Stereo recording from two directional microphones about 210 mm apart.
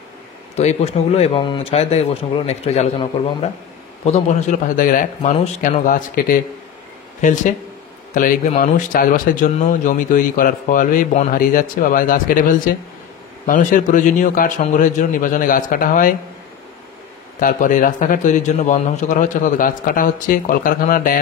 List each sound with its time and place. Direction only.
0.6 s speech: 30° left (ahead or behind)
17.4 s speech: 40° left (ahead or behind)